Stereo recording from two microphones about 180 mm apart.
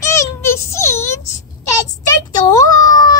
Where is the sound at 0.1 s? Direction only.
15° left (ahead or behind).